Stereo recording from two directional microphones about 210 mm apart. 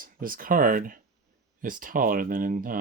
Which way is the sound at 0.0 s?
40° right (ahead or behind).